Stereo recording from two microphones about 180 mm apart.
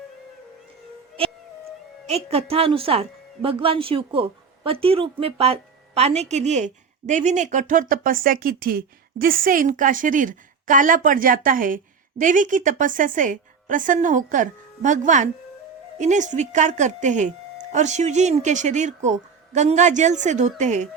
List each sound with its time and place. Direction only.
2.0 s a woman's voice: 35° right (ahead or behind)